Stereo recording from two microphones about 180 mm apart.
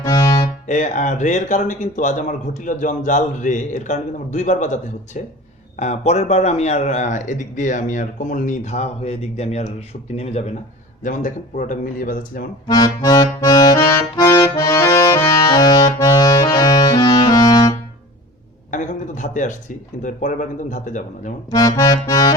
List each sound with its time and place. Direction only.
0.0 s music: 20° left (ahead or behind)
0.7 s a man's voice: 45° left (ahead or behind)
12.6 s accordion: 20° left (ahead or behind)
16.8 s music: 25° left (ahead or behind)
18.7 s a man's voice: 45° left (ahead or behind)
21.8 s accordion: 20° left (ahead or behind)